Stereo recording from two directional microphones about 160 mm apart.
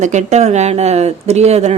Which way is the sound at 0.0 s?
45° right (ahead or behind).